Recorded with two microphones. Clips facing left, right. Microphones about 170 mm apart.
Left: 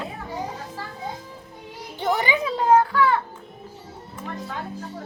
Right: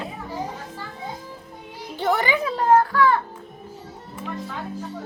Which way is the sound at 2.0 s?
20° left (ahead or behind).